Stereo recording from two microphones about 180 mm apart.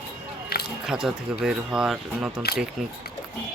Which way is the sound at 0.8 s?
5° right (ahead or behind).